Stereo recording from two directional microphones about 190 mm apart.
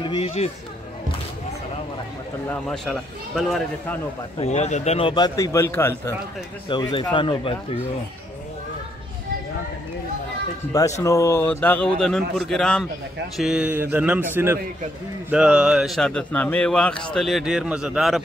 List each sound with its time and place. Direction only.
0.0 s speech: 25° left (ahead or behind)
2.7 s speech: centre (ahead or behind)
4.4 s a man's voice: 35° left (ahead or behind); by 6.1 s 10° left (ahead or behind)
6.7 s a man's voice: 25° left (ahead or behind)
10.7 s speech: 15° left (ahead or behind); by 18.2 s 5° right (ahead or behind)